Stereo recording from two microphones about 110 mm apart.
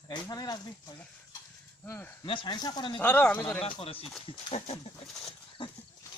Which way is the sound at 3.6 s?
55° left (ahead or behind).